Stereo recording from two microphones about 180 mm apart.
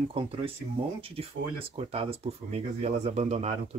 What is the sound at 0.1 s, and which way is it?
Speech, 30° right (ahead or behind).